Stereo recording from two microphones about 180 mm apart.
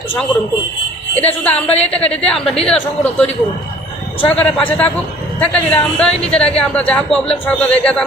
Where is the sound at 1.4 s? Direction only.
5° left (ahead or behind).